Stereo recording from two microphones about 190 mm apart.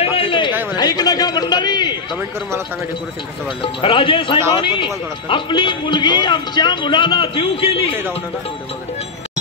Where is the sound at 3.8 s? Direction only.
25° left (ahead or behind).